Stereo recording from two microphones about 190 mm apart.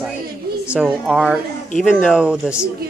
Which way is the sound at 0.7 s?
5° right (ahead or behind).